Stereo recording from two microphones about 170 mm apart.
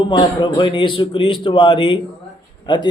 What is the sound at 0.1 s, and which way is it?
A man's voice, 25° left (ahead or behind).